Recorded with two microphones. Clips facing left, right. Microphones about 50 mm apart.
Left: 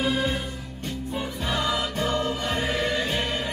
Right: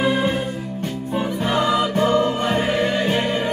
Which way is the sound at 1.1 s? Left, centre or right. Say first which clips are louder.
Right 8 dB; right.